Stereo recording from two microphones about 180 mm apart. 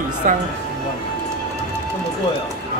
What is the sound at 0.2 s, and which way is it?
Speech, 45° right (ahead or behind).